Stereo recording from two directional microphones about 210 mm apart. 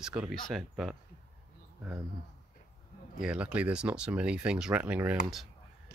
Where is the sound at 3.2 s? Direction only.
5° right (ahead or behind).